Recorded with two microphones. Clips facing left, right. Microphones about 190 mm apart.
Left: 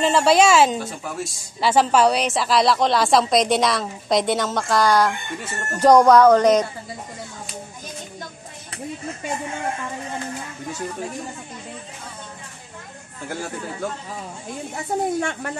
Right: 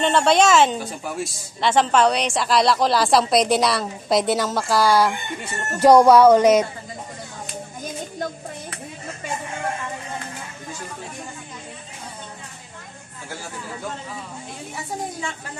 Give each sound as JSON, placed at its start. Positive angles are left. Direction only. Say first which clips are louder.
{"t": 0.0, "sound": "a woman's voice", "louder": "left 1 dB", "side_deg": 5}
{"t": 15.1, "sound": "speech", "louder": "left 7 dB", "side_deg": 65}